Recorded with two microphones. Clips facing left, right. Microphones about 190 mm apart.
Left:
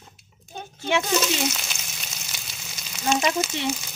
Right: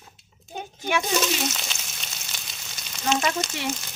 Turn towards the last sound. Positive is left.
turn(degrees=5)  # may be behind; listen again after turning